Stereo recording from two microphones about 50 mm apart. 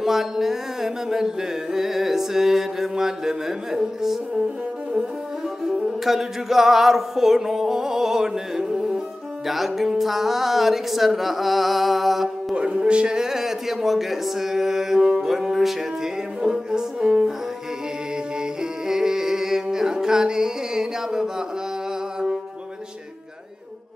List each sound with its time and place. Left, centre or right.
0.0 s a sound: centre
5.9 s music: centre
9.5 s speech: centre
12.5 s a sound: centre
15.0 s music: centre
15.2 s music: centre
18.6 s music: centre